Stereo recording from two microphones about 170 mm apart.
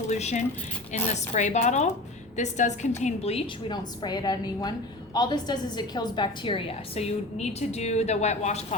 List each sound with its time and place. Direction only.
0.1 s a woman's voice: 40° left (ahead or behind)